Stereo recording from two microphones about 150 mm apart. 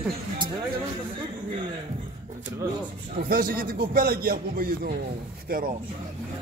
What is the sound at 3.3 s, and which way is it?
Speech, 75° right (ahead or behind).